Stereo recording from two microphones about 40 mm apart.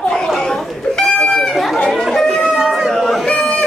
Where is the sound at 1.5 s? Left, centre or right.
Centre.